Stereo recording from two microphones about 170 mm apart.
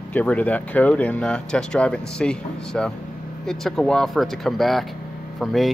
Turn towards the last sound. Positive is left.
turn(degrees=0)  # may be behind; listen again after turning